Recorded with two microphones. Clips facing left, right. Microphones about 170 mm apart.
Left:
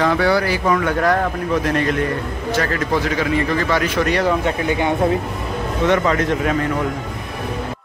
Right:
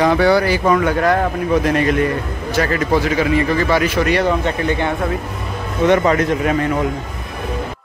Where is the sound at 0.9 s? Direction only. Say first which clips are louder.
Right 2 dB; 5° right (ahead or behind); by 5.0 s 10° left (ahead or behind).